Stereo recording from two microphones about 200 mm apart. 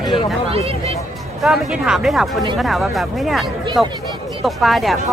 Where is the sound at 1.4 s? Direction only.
5° right (ahead or behind).